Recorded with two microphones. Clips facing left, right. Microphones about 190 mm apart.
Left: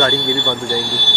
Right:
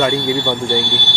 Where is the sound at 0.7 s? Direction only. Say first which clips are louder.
Right 2 dB; 40° left (ahead or behind).